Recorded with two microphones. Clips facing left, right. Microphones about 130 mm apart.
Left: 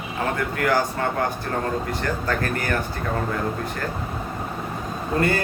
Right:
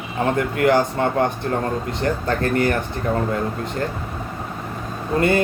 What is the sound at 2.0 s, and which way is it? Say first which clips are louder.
Speech: right 4 dB; 25° right (ahead or behind).